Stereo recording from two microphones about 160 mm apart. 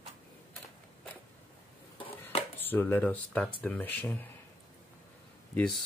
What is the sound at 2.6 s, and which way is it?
Speech, 10° left (ahead or behind).